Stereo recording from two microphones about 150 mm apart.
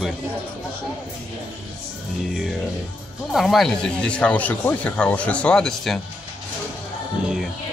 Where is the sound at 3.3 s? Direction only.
Centre (ahead or behind).